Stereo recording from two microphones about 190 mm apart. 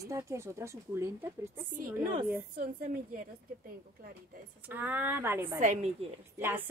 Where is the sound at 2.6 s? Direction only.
45° right (ahead or behind).